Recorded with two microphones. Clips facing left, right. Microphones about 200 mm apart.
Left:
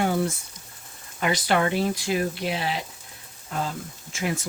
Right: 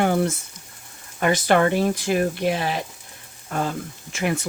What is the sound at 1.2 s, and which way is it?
Speech, 50° right (ahead or behind).